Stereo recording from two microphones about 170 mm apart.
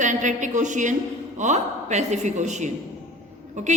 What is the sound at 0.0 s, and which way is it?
A woman's voice, 45° right (ahead or behind).